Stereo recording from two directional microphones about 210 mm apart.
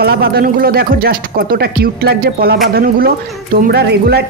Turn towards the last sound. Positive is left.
turn(degrees=-50)  # may be behind; listen again after turning